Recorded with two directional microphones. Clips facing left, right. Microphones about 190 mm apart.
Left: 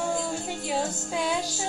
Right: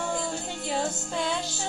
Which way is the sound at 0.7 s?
10° left (ahead or behind).